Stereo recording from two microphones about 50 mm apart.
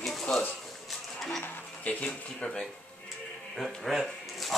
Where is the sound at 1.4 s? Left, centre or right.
Left.